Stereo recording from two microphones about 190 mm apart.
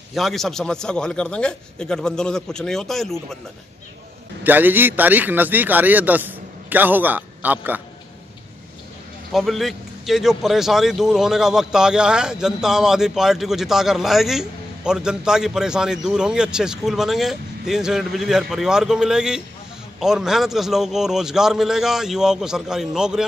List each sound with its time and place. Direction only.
0.1 s a man's voice: centre (ahead or behind)
4.4 s a man's voice: 10° right (ahead or behind)
9.3 s a man's voice: centre (ahead or behind)